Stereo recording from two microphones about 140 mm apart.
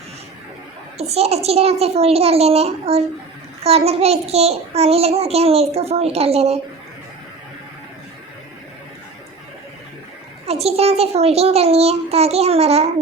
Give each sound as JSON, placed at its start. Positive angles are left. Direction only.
{"t": 0.9, "sound": "a child's voice", "side_deg": -50}
{"t": 10.4, "sound": "a child's voice", "side_deg": -45}